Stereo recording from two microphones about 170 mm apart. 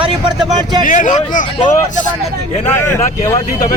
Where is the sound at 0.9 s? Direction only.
50° left (ahead or behind).